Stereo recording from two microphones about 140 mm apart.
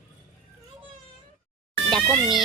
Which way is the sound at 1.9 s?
Centre (ahead or behind).